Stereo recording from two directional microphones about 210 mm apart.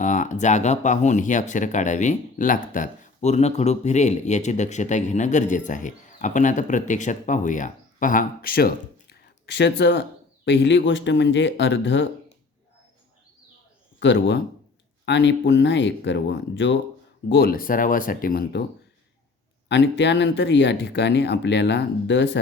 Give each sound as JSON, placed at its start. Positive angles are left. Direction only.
{"t": 0.0, "sound": "speech", "side_deg": 35}
{"t": 14.0, "sound": "speech", "side_deg": 55}
{"t": 17.2, "sound": "speech", "side_deg": 50}
{"t": 19.6, "sound": "speech", "side_deg": 55}